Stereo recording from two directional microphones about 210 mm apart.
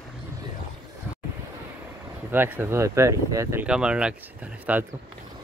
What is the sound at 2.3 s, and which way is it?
Speech, 10° right (ahead or behind).